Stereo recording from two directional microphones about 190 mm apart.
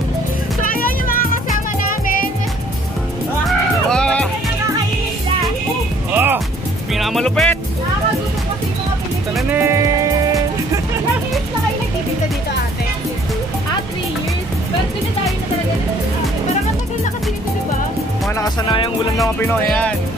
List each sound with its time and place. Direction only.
0.7 s music: 50° left (ahead or behind)
3.4 s music: 5° left (ahead or behind)
6.1 s music: 10° right (ahead or behind)
9.3 s music: 10° right (ahead or behind)
18.3 s music: 20° left (ahead or behind)
19.4 s speech: 5° left (ahead or behind)